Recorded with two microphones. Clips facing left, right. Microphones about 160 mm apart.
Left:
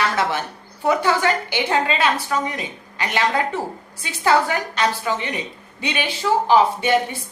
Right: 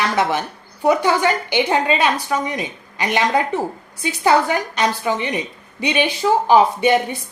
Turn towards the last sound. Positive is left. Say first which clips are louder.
# right 3 dB
turn(degrees=-15)  # may be behind; listen again after turning